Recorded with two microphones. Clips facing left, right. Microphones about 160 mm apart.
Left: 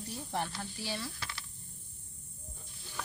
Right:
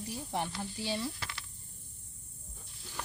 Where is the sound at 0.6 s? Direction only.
20° right (ahead or behind).